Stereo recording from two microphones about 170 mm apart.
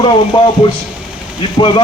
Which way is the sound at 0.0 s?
25° left (ahead or behind).